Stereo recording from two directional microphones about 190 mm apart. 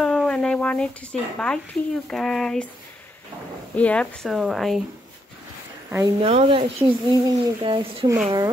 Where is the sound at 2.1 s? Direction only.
Centre (ahead or behind).